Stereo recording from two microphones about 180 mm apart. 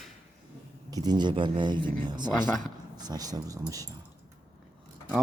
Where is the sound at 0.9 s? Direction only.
20° right (ahead or behind).